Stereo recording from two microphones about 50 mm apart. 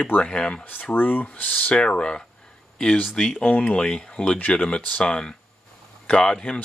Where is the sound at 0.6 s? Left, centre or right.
Left; by 2.2 s centre.